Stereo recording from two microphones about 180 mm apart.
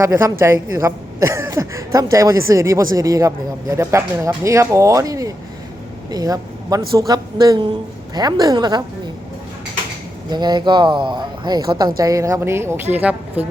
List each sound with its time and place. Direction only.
0.0 s speech: 15° right (ahead or behind)
10.2 s speech: 25° right (ahead or behind)